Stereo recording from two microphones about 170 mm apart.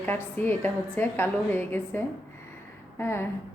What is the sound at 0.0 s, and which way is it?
A woman's voice, 10° left (ahead or behind).